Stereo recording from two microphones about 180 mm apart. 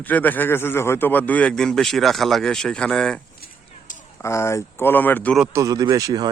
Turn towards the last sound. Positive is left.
turn(degrees=-20)  # may be behind; listen again after turning